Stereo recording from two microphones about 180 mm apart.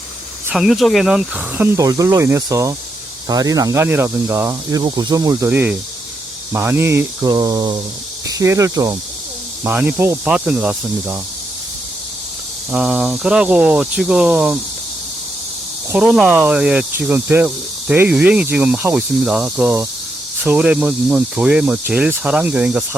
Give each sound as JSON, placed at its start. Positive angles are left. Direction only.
{"t": 0.5, "sound": "speech", "side_deg": 0}
{"t": 12.7, "sound": "speech", "side_deg": -5}
{"t": 15.9, "sound": "speech", "side_deg": -5}